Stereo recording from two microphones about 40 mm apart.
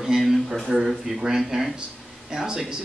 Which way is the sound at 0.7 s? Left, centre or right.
Centre.